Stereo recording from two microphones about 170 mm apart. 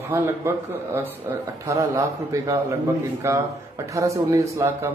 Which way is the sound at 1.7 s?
20° right (ahead or behind).